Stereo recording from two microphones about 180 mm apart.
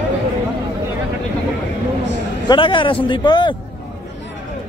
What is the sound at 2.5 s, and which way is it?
A man's voice, 25° left (ahead or behind).